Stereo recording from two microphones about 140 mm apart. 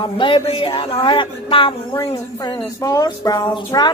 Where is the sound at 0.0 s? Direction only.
35° left (ahead or behind).